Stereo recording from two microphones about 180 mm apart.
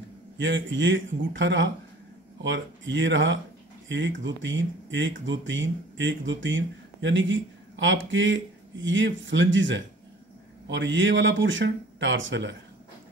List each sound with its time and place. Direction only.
0.4 s speech: 90° right